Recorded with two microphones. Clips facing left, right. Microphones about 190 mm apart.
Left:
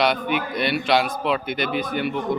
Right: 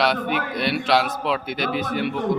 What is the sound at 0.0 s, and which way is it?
A man's voice, centre (ahead or behind).